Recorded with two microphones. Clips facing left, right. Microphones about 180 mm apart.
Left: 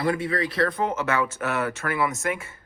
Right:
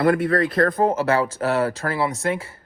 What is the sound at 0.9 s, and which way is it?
Speech, 35° right (ahead or behind).